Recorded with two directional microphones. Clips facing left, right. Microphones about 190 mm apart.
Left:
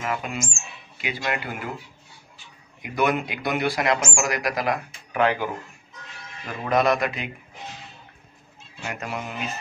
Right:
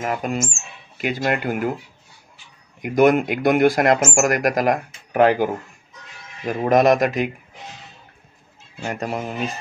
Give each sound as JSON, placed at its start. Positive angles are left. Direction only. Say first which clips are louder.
{"t": 0.0, "sound": "speech", "louder": "right 5 dB", "side_deg": -40}
{"t": 2.8, "sound": "speech", "louder": "right 8 dB", "side_deg": -45}
{"t": 8.8, "sound": "speech", "louder": "right 6 dB", "side_deg": -35}